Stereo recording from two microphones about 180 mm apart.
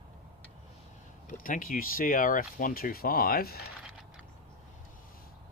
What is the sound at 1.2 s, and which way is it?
Speech, 50° left (ahead or behind).